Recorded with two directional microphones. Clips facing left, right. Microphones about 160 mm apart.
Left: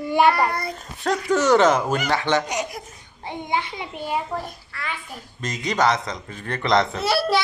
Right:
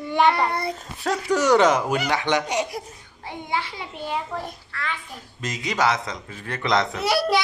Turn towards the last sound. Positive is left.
turn(degrees=-15)  # may be behind; listen again after turning